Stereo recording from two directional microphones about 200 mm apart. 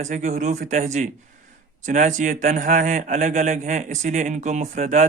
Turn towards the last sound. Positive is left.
turn(degrees=-35)  # may be behind; listen again after turning